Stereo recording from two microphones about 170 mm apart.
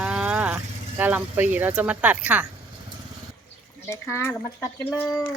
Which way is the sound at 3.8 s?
15° left (ahead or behind).